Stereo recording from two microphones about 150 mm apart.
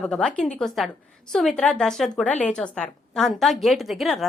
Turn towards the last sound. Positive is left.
turn(degrees=0)  # may be behind; listen again after turning